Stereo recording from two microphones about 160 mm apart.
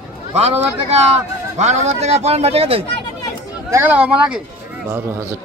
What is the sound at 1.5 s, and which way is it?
Speech, 45° right (ahead or behind).